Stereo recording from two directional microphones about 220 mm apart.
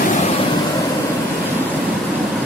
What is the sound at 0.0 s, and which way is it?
Vehicle, 35° left (ahead or behind).